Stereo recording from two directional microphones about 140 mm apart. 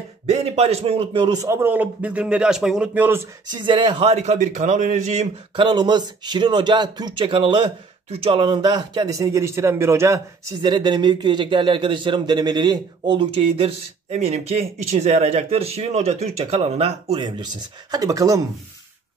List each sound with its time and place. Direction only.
0.3 s a man's voice: 50° right (ahead or behind); by 3.3 s 15° right (ahead or behind)
3.5 s a man's voice: 35° right (ahead or behind); by 5.3 s 55° right (ahead or behind)
5.6 s a man's voice: 35° right (ahead or behind)
10.6 s a man's voice: 30° right (ahead or behind)
17.9 s speech: 25° right (ahead or behind)